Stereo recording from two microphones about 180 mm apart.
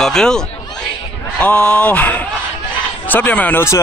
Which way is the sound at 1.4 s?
5° left (ahead or behind).